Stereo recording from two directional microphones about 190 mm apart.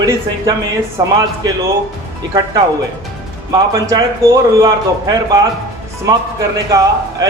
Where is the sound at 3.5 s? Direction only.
20° right (ahead or behind).